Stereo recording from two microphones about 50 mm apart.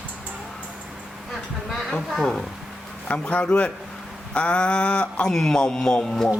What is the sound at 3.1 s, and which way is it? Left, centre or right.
Speech, left.